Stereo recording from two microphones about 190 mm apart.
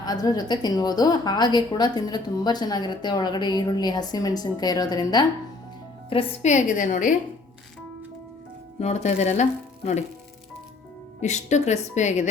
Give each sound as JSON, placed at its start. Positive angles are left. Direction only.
{"t": 0.0, "sound": "a woman's voice", "side_deg": 20}
{"t": 6.1, "sound": "speech", "side_deg": 35}
{"t": 8.8, "sound": "speech", "side_deg": 35}
{"t": 11.2, "sound": "speech", "side_deg": 40}